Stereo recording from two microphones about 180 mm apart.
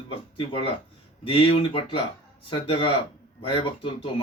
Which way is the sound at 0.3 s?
30° left (ahead or behind).